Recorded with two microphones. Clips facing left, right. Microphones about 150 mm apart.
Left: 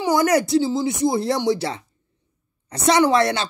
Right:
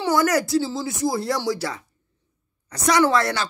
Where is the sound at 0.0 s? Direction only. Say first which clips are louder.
Left 2 dB; 20° left (ahead or behind).